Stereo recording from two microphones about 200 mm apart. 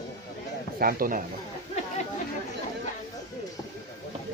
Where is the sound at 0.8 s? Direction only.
45° right (ahead or behind).